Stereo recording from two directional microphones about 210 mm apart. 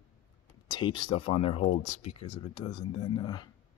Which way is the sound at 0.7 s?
20° left (ahead or behind).